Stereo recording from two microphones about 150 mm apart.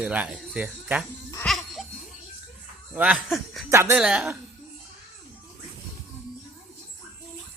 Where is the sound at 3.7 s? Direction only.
20° right (ahead or behind).